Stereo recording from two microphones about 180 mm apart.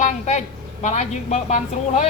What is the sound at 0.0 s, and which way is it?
A woman's voice, 40° left (ahead or behind).